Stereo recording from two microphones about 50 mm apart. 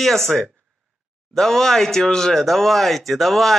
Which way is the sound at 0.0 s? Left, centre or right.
Centre.